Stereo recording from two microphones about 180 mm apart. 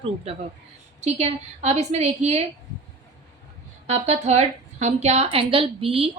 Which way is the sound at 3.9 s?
35° right (ahead or behind).